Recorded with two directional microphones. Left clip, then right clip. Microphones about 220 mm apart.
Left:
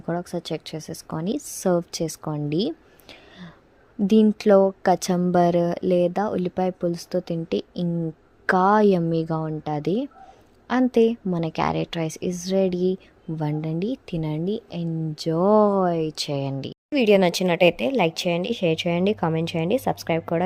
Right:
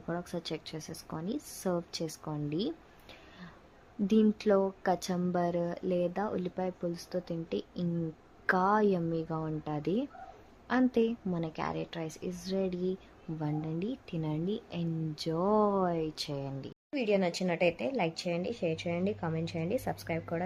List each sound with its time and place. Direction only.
0.0 s speech: 25° left (ahead or behind)